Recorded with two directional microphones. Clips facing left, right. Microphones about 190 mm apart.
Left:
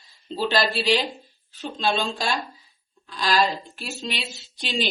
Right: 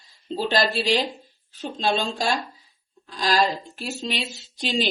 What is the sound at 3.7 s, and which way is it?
Speech, 40° right (ahead or behind).